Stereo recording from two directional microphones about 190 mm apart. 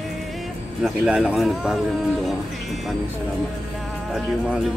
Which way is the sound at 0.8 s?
5° right (ahead or behind).